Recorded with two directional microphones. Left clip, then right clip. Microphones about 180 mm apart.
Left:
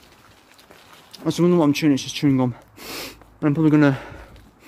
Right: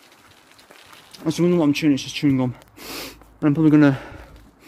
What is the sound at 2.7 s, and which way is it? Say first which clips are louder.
Snort: even; centre (ahead or behind).